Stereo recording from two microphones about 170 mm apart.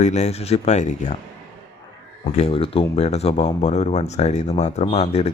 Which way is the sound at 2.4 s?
35° left (ahead or behind).